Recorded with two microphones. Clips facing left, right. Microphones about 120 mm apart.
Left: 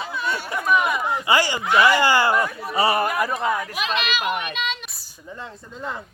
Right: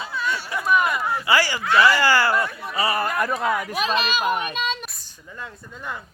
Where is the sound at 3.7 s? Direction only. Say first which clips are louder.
Right 2 dB; 35° right (ahead or behind).